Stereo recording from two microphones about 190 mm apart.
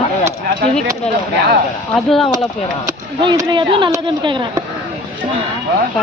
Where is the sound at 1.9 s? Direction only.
Centre (ahead or behind).